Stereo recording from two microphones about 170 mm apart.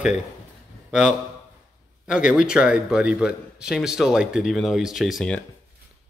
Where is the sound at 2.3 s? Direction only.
5° right (ahead or behind).